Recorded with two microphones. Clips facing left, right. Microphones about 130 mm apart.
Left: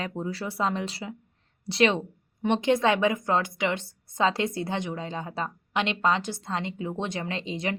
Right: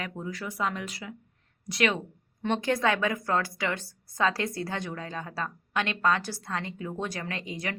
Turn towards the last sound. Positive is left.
turn(degrees=25)  # may be behind; listen again after turning